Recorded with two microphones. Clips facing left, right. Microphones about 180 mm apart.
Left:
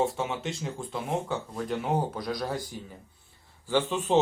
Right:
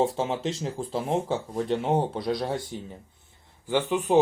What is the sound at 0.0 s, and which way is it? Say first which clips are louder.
Speech: right 3 dB; 30° right (ahead or behind).